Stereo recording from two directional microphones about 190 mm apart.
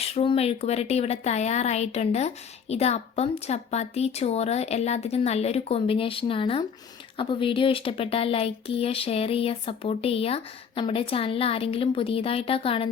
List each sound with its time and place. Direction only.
0.0 s speech: 30° left (ahead or behind)